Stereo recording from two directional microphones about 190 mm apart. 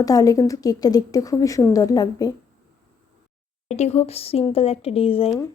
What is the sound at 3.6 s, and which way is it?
Speech, 35° left (ahead or behind).